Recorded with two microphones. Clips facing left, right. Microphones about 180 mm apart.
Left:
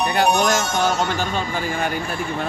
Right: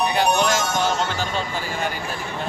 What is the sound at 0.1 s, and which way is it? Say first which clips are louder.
Speech: left 2 dB; 50° left (ahead or behind).